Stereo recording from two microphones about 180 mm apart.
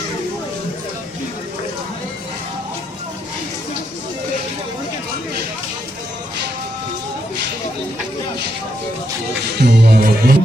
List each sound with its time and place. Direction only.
9.6 s music: 70° right (ahead or behind)